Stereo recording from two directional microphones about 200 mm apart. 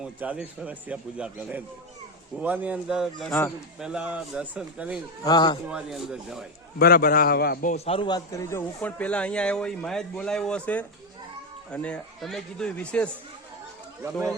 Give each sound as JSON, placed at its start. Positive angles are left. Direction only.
{"t": 0.0, "sound": "speech", "side_deg": -5}
{"t": 5.2, "sound": "speech", "side_deg": 20}
{"t": 5.6, "sound": "speech", "side_deg": -5}
{"t": 6.7, "sound": "a man's voice", "side_deg": 50}
{"t": 7.9, "sound": "speech", "side_deg": 25}